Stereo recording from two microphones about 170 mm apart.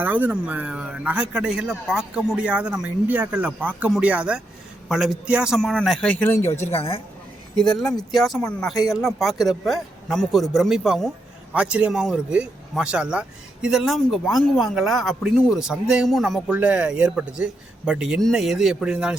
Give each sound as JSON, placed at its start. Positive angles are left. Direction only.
{"t": 0.0, "sound": "a man's voice", "side_deg": -10}
{"t": 6.6, "sound": "a woman's voice", "side_deg": 40}
{"t": 8.1, "sound": "speech", "side_deg": 0}